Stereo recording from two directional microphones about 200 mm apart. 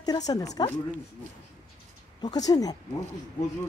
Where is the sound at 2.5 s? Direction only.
20° left (ahead or behind).